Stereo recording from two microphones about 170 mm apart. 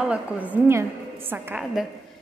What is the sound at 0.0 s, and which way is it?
A woman's voice, 10° right (ahead or behind).